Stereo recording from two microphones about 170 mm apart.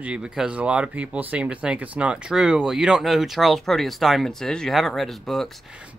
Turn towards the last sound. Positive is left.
turn(degrees=0)  # may be behind; listen again after turning